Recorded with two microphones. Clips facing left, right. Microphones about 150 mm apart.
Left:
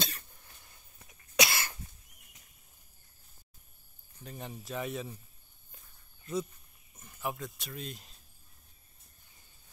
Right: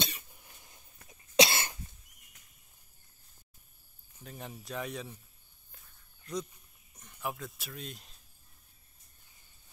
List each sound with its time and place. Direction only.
0.3 s cough: 15° right (ahead or behind)
4.2 s speech: centre (ahead or behind)
6.2 s speech: centre (ahead or behind)